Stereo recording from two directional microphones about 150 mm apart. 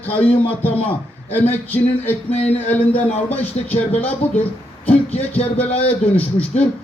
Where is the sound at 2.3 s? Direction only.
45° left (ahead or behind).